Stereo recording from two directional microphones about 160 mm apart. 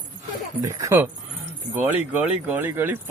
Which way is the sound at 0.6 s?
20° right (ahead or behind).